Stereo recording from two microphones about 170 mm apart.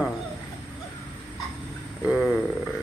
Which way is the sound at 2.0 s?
Centre (ahead or behind).